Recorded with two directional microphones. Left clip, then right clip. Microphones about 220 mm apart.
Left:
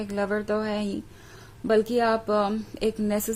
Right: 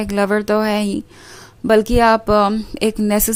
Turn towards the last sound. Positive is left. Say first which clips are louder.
# right 8 dB
turn(degrees=-35)  # may be behind; listen again after turning